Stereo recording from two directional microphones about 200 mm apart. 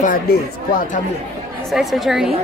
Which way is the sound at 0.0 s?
45° left (ahead or behind).